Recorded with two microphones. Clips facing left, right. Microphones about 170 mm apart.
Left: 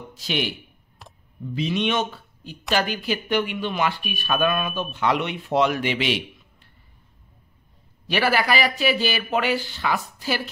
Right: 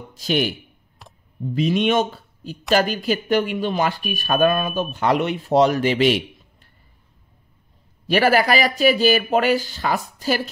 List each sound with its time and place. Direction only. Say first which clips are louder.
0.2 s speech: right 6 dB; 45° right (ahead or behind)
1.0 s a sound: even; centre (ahead or behind)
1.5 s speech: right 5 dB; 45° right (ahead or behind)
8.1 s speech: right 5 dB; 45° right (ahead or behind)